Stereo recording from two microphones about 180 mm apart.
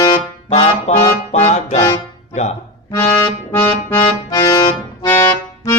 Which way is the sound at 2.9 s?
20° left (ahead or behind).